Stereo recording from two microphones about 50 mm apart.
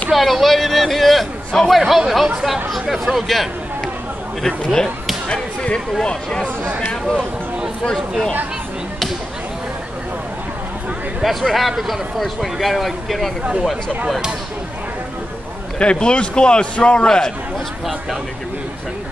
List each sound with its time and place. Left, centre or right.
0.1 s speech: centre
5.3 s a man's voice: left
11.4 s speech: centre
13.4 s speech: right
15.8 s a man's voice: left